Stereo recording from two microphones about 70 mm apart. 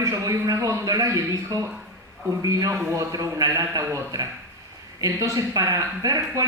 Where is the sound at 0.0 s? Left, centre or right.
Right.